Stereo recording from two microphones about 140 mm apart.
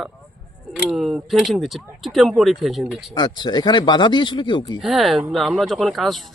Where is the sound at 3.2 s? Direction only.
30° left (ahead or behind).